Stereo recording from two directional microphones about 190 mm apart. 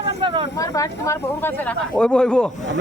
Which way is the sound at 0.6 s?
15° left (ahead or behind).